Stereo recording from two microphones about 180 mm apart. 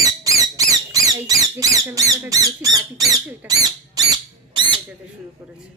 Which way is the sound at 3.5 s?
20° right (ahead or behind).